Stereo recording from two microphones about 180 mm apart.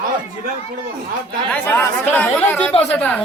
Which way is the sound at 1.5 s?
10° left (ahead or behind).